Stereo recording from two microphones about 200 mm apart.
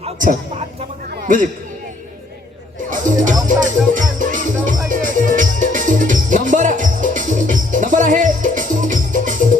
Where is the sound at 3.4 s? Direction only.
40° right (ahead or behind).